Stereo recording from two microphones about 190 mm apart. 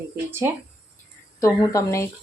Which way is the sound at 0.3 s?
10° right (ahead or behind).